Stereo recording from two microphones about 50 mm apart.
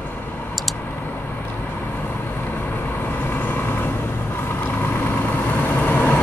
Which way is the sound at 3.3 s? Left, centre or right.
Left.